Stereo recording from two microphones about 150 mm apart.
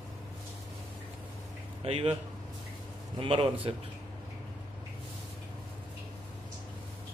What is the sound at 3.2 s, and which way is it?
Speech, 35° right (ahead or behind).